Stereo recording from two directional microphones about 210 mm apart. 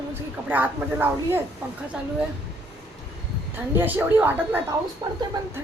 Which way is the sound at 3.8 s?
10° right (ahead or behind).